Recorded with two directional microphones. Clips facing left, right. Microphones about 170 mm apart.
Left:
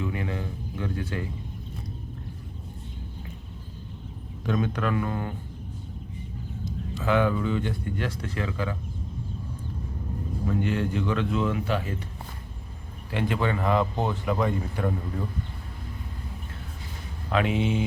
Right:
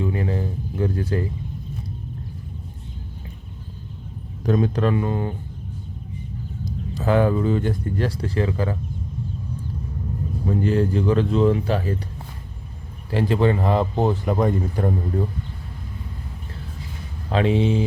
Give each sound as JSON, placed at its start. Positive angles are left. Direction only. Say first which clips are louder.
{"t": 0.0, "sound": "a sound", "louder": "right 6 dB", "side_deg": -35}
{"t": 4.4, "sound": "speech", "louder": "right 6 dB", "side_deg": -35}
{"t": 6.7, "sound": "speech", "louder": "right 4 dB", "side_deg": -40}
{"t": 10.5, "sound": "speech", "louder": "right 6 dB", "side_deg": -35}
{"t": 13.1, "sound": "speech", "louder": "right 7 dB", "side_deg": -35}
{"t": 17.3, "sound": "speech", "louder": "right 5 dB", "side_deg": -30}